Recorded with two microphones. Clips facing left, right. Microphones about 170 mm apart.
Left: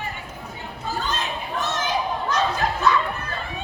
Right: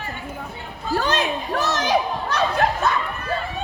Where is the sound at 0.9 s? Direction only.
75° right (ahead or behind); by 3.0 s 55° right (ahead or behind).